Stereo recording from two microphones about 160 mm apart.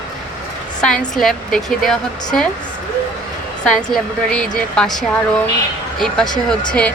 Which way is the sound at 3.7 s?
5° left (ahead or behind).